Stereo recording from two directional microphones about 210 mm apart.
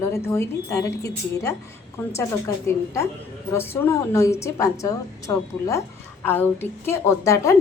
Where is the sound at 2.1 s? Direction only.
15° left (ahead or behind).